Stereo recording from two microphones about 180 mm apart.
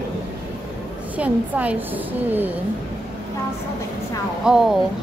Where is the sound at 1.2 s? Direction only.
10° right (ahead or behind).